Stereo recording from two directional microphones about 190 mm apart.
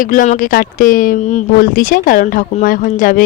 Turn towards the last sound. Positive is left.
turn(degrees=45)  # may be behind; listen again after turning